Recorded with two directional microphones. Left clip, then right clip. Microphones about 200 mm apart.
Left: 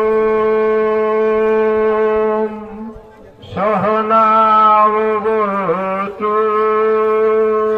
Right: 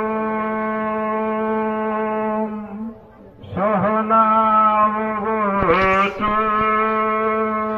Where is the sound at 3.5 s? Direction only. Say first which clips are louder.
Left 4 dB; 55° left (ahead or behind).